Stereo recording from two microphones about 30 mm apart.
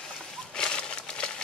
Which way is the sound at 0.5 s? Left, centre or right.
Left.